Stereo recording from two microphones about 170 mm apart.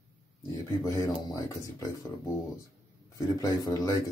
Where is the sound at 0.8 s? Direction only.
20° left (ahead or behind).